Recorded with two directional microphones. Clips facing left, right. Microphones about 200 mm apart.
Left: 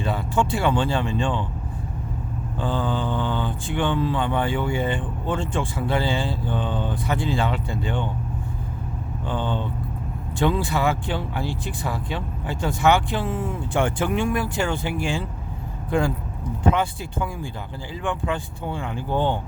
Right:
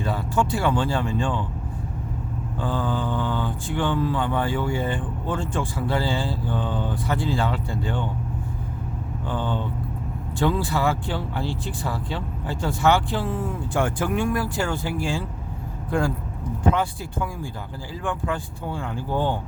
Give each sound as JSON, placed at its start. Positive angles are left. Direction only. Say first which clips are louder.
{"t": 0.0, "sound": "speech", "louder": "left 1 dB", "side_deg": 25}
{"t": 2.6, "sound": "speech", "louder": "left 1 dB", "side_deg": 25}
{"t": 9.2, "sound": "speech", "louder": "left 1 dB", "side_deg": 20}